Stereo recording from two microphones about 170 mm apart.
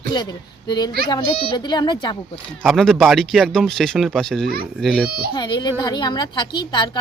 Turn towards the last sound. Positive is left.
turn(degrees=25)  # may be behind; listen again after turning